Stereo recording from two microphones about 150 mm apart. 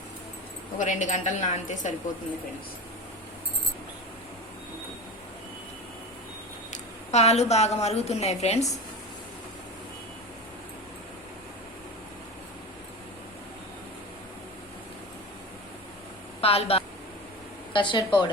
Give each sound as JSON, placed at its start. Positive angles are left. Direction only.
{"t": 0.8, "sound": "a woman's voice", "side_deg": 55}
{"t": 6.7, "sound": "a woman's voice", "side_deg": 50}
{"t": 16.4, "sound": "speech", "side_deg": 40}
{"t": 17.7, "sound": "speech", "side_deg": 30}